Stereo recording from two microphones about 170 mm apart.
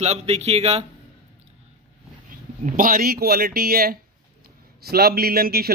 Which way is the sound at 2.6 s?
55° right (ahead or behind).